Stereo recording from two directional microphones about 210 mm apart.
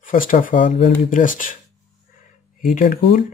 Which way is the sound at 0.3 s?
40° left (ahead or behind).